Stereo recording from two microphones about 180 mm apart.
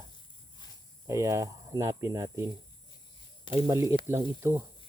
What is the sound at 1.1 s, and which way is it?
Speech, 15° right (ahead or behind).